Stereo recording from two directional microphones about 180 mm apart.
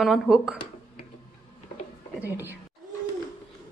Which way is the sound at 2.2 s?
10° right (ahead or behind).